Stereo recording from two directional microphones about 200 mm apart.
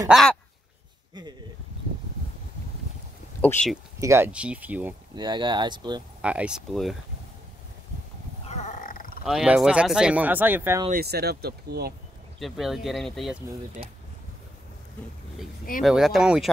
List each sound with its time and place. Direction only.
0.1 s speech: centre (ahead or behind)
3.3 s speech: 5° left (ahead or behind)
3.7 s speech: 10° right (ahead or behind)
5.1 s speech: 25° right (ahead or behind)
6.2 s speech: 5° right (ahead or behind)
8.5 s a sound: 35° left (ahead or behind)
9.2 s speech: centre (ahead or behind)
10.9 s speech: 50° right (ahead or behind)
12.4 s speech: centre (ahead or behind)
15.8 s speech: centre (ahead or behind)